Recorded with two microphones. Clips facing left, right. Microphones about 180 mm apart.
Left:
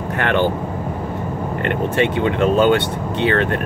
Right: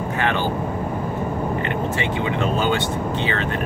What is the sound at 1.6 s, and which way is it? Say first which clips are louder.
Speech: left 5 dB; 60° left (ahead or behind).